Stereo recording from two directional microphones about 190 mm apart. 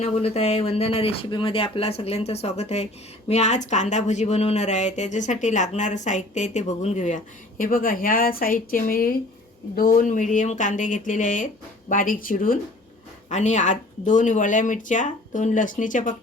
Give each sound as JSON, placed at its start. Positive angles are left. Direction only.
{"t": 0.0, "sound": "speech", "side_deg": 30}